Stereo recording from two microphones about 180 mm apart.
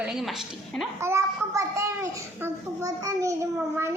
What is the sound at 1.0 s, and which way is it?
A child's voice, 15° right (ahead or behind).